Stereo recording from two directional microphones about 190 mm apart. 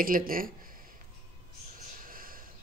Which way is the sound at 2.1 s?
50° right (ahead or behind).